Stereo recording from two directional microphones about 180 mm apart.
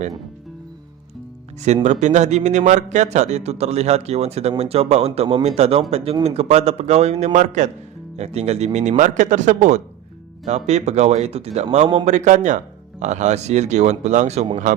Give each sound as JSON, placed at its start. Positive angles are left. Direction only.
{"t": 1.6, "sound": "a man's voice", "side_deg": -40}